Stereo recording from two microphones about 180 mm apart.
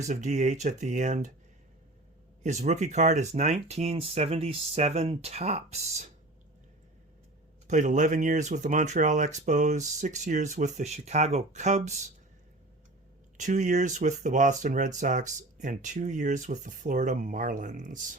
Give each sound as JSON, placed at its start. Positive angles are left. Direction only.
{"t": 0.0, "sound": "speech", "side_deg": -40}
{"t": 2.4, "sound": "speech", "side_deg": -40}
{"t": 7.7, "sound": "speech", "side_deg": -45}
{"t": 13.3, "sound": "speech", "side_deg": -45}